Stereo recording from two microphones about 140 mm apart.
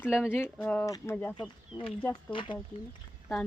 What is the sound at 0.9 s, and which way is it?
Speech, 25° left (ahead or behind).